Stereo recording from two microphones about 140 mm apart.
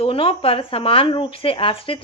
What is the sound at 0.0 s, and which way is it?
Speech, 40° left (ahead or behind).